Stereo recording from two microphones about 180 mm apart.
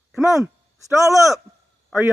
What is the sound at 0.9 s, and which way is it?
Speech, 15° right (ahead or behind).